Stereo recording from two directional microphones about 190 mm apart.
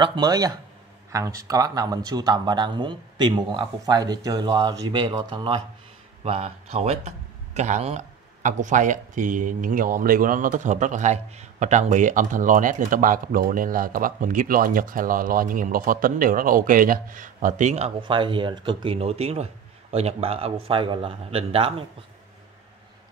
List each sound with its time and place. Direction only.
0.0 s speech: 25° right (ahead or behind)